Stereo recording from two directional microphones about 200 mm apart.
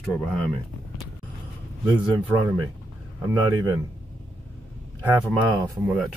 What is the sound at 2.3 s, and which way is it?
Speech, 10° right (ahead or behind).